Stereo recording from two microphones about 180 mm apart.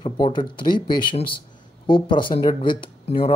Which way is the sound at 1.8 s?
30° left (ahead or behind).